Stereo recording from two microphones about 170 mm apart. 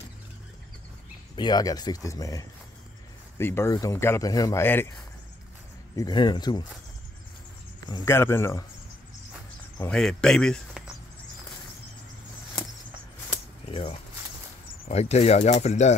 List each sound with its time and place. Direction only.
1.3 s speech: 25° left (ahead or behind)
5.9 s speech: 25° left (ahead or behind)
7.9 s speech: 15° left (ahead or behind)
9.8 s speech: 5° left (ahead or behind)
13.7 s a sound: 30° left (ahead or behind)
14.9 s speech: 40° left (ahead or behind)